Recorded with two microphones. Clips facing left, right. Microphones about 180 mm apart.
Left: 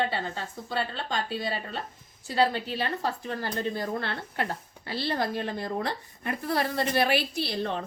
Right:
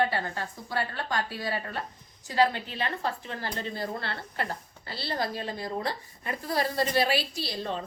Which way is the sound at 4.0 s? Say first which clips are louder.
Left 2 dB; 55° left (ahead or behind).